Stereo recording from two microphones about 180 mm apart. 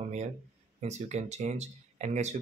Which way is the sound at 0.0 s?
40° right (ahead or behind).